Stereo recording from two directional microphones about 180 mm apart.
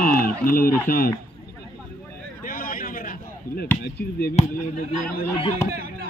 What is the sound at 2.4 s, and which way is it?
Chop, 50° left (ahead or behind).